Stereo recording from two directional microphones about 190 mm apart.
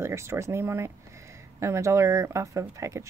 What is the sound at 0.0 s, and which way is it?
A woman's voice, 15° right (ahead or behind).